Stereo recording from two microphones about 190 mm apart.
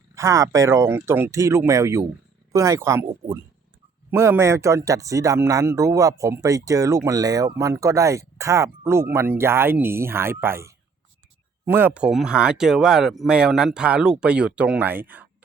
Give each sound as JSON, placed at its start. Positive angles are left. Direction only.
{"t": 0.2, "sound": "speech", "side_deg": -15}